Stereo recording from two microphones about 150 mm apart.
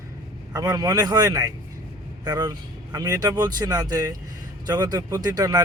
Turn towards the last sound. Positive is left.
turn(degrees=-25)  # may be behind; listen again after turning